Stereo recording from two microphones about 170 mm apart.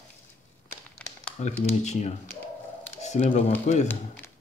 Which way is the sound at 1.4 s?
40° left (ahead or behind).